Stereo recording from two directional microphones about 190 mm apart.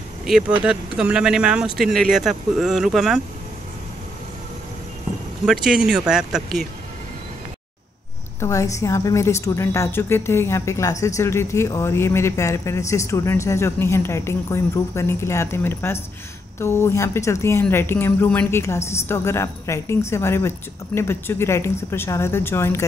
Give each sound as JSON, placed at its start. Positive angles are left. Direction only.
{"t": 0.3, "sound": "speech", "side_deg": -5}
{"t": 5.4, "sound": "speech", "side_deg": -5}
{"t": 8.4, "sound": "a woman's voice", "side_deg": 15}